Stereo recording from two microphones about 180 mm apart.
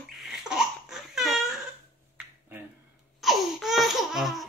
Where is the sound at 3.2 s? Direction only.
Centre (ahead or behind).